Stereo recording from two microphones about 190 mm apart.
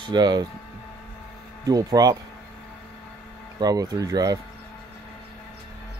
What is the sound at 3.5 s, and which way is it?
Speech, 20° right (ahead or behind).